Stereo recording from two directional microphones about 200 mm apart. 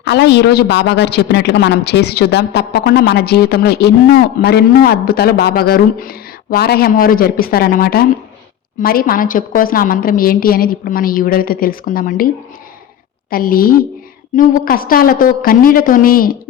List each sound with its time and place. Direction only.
0.0 s a woman's voice: 60° left (ahead or behind)
13.3 s a woman's voice: 45° left (ahead or behind)